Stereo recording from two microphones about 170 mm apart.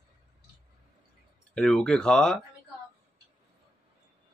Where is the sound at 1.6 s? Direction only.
5° left (ahead or behind).